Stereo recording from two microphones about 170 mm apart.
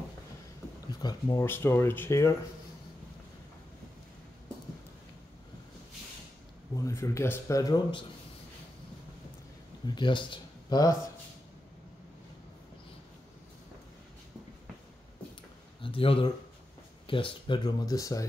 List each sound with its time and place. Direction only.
1.0 s speech: 20° left (ahead or behind)
6.7 s speech: 20° left (ahead or behind)
9.8 s speech: 25° left (ahead or behind)
15.8 s a sound: 35° left (ahead or behind)
17.1 s speech: 30° left (ahead or behind)